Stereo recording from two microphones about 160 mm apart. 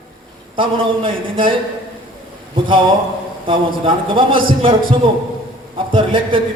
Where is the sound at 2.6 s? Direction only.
30° right (ahead or behind).